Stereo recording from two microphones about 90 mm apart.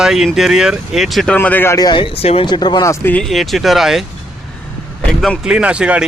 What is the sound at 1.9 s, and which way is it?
Speech, 80° left.